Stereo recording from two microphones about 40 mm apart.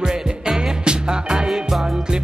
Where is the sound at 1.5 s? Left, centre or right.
Centre.